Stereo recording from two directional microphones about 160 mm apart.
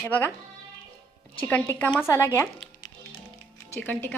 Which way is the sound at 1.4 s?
10° left (ahead or behind).